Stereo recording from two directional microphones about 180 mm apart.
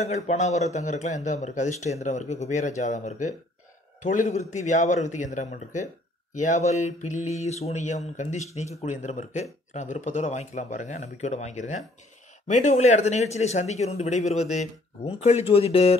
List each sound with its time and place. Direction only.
0.0 s mantra: 40° left (ahead or behind)